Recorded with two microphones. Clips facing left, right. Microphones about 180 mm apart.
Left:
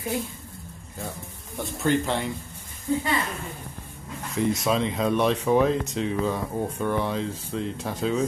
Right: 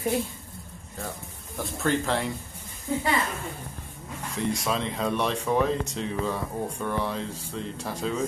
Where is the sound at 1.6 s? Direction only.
Centre (ahead or behind).